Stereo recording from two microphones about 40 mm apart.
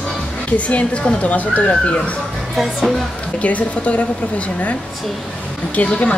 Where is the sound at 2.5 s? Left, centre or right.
Centre.